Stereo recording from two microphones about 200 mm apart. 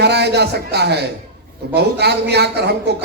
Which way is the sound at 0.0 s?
55° right (ahead or behind).